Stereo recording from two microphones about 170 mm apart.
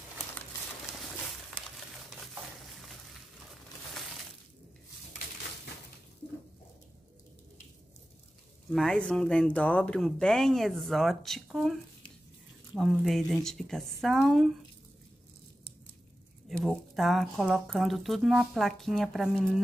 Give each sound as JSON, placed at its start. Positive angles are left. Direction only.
{"t": 8.6, "sound": "speech", "side_deg": 0}
{"t": 16.4, "sound": "speech", "side_deg": 0}